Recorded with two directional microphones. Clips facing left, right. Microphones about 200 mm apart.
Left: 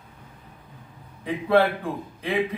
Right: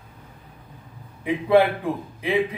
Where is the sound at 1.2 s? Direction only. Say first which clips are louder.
Right 3 dB; 10° right (ahead or behind).